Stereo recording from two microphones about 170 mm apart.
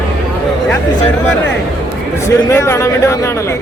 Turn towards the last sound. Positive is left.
turn(degrees=15)  # may be behind; listen again after turning